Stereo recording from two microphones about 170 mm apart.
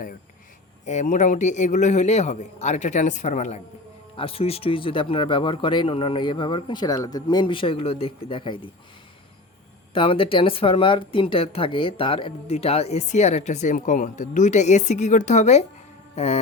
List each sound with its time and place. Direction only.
0.9 s a man's voice: 45° left (ahead or behind)
4.2 s speech: 35° left (ahead or behind)
9.9 s speech: 30° left (ahead or behind)